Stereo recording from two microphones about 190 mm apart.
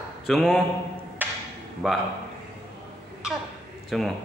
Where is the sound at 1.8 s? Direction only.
Centre (ahead or behind).